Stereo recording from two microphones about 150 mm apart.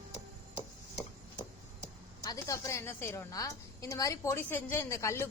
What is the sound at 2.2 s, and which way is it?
A woman's voice, 20° left (ahead or behind).